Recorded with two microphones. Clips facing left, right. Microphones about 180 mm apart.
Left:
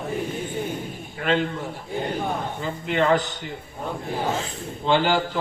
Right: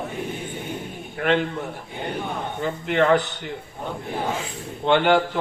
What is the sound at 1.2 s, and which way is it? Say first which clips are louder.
Speech: right 2 dB; 55° right (ahead or behind).